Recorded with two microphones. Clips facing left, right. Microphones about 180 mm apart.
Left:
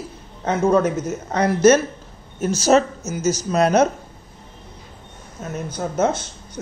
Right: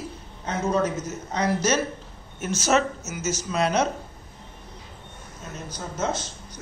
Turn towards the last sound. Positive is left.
turn(degrees=55)  # may be behind; listen again after turning